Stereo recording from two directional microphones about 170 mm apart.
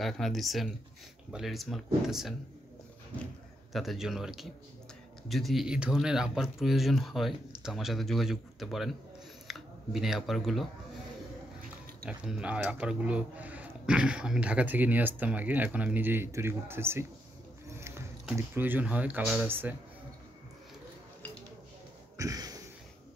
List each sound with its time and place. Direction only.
0.0 s speech: centre (ahead or behind)
3.1 s speech: 10° left (ahead or behind)
12.1 s speech: 5° right (ahead or behind)
17.7 s music: 15° right (ahead or behind)
18.3 s speech: 10° right (ahead or behind)
22.1 s cough: 20° right (ahead or behind)